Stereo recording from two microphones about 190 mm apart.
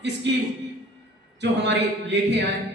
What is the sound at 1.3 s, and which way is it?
Speech, 65° right (ahead or behind).